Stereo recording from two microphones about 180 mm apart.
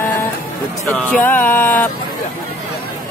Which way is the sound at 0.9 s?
10° left (ahead or behind).